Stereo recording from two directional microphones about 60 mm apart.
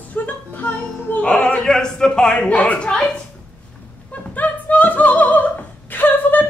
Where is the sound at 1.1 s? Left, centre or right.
Centre.